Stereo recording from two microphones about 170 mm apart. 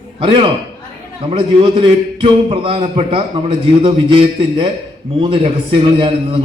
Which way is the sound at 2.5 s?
30° right (ahead or behind).